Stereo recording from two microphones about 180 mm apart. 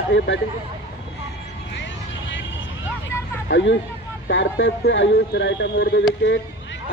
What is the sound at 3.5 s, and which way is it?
Speech, 80° left.